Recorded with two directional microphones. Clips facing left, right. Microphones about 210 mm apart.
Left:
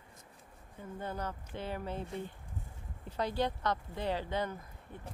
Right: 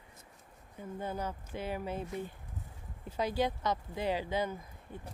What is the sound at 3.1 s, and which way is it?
Speech, 10° right (ahead or behind).